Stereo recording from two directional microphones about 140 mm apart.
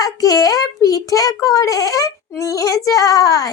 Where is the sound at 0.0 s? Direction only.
25° left (ahead or behind).